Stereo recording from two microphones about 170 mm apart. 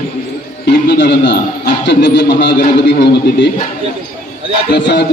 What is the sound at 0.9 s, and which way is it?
A man's voice, 85° left.